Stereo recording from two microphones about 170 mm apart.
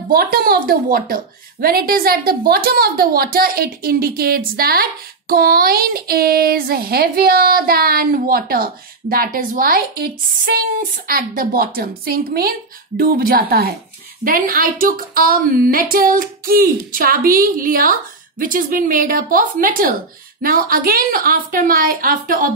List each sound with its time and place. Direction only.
0.1 s speech: 60° right (ahead or behind)